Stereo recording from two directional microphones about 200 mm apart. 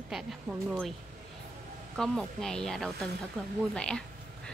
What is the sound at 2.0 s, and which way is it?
A woman's voice, 5° left (ahead or behind).